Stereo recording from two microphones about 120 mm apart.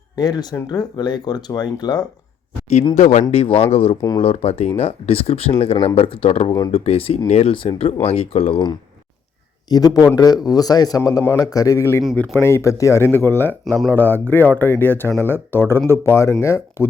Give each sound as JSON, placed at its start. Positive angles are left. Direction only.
{"t": 0.2, "sound": "speech", "side_deg": 35}
{"t": 2.9, "sound": "speech", "side_deg": 85}
{"t": 3.3, "sound": "speech", "side_deg": 55}
{"t": 7.5, "sound": "speech", "side_deg": 45}
{"t": 9.6, "sound": "speech", "side_deg": 35}